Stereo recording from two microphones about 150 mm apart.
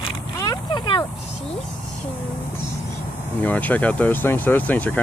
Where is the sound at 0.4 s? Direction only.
30° left (ahead or behind).